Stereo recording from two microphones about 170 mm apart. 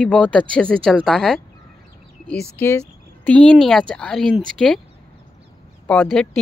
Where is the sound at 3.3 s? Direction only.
5° left (ahead or behind).